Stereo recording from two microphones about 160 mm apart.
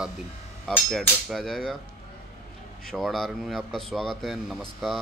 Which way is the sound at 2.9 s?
Centre (ahead or behind).